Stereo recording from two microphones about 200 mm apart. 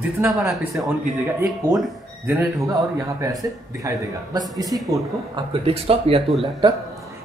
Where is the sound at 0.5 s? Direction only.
Centre (ahead or behind).